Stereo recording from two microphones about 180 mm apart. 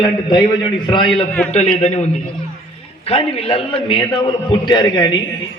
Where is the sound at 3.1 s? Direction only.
35° left (ahead or behind).